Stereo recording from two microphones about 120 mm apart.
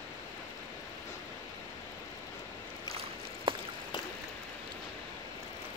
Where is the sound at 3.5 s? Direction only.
45° right (ahead or behind).